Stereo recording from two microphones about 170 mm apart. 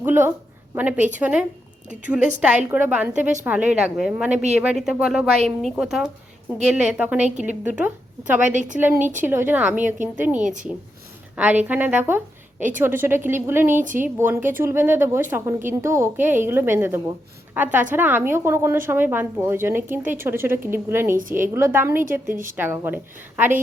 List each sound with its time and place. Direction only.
0.0 s speech: 15° right (ahead or behind)
8.5 s a woman's voice: 45° right (ahead or behind)
9.2 s speech: 10° right (ahead or behind)
10.3 s a woman's voice: 50° right (ahead or behind)
11.3 s a woman's voice: 10° right (ahead or behind)
13.7 s a woman's voice: 50° right (ahead or behind)
14.0 s a woman's voice: 10° right (ahead or behind)
21.1 s a woman's voice: 50° right (ahead or behind)
21.5 s speech: 15° right (ahead or behind)
22.3 s a woman's voice: 50° right (ahead or behind)
22.5 s speech: 15° right (ahead or behind)